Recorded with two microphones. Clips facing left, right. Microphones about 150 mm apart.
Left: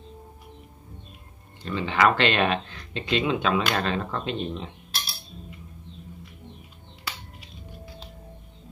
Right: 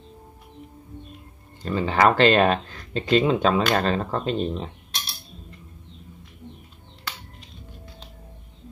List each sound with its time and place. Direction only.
1.6 s speech: 40° right (ahead or behind)